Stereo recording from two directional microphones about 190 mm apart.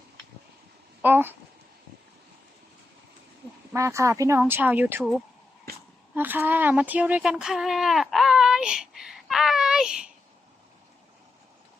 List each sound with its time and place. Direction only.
1.0 s speech: 10° right (ahead or behind)
3.8 s speech: 15° right (ahead or behind)
6.1 s speech: 10° right (ahead or behind)